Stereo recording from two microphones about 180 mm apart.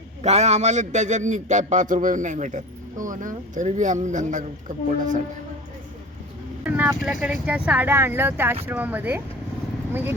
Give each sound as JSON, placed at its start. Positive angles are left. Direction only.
{"t": 0.2, "sound": "a man's voice", "side_deg": -40}
{"t": 6.7, "sound": "vehicle", "side_deg": -10}
{"t": 7.0, "sound": "speech", "side_deg": 0}